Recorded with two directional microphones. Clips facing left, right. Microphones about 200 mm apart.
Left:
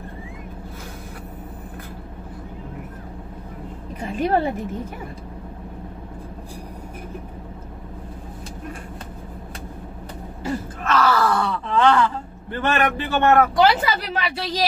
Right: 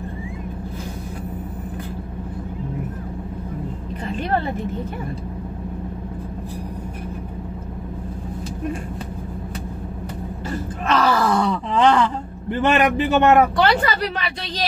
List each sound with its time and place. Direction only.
4.0 s a sound: 10° left (ahead or behind)
10.9 s groan: 15° right (ahead or behind)
12.6 s speech: 15° right (ahead or behind)
13.6 s a woman's voice: 5° left (ahead or behind)